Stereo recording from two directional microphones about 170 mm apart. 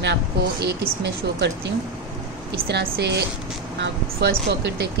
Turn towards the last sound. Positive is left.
turn(degrees=-90)